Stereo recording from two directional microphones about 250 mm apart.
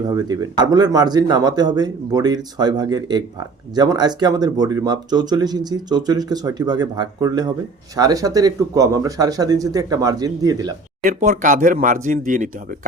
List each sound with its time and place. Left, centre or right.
0.1 s speech: centre
11.0 s speech: right